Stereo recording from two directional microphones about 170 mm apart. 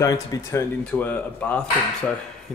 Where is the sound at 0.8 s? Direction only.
10° left (ahead or behind).